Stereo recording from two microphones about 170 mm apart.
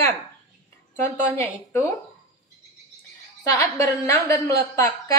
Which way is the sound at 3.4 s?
15° left (ahead or behind).